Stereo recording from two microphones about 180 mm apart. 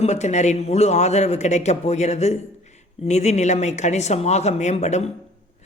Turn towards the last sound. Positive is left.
turn(degrees=35)  # may be behind; listen again after turning